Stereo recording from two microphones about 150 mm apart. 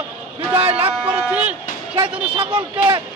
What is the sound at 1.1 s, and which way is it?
Speech, 10° right (ahead or behind).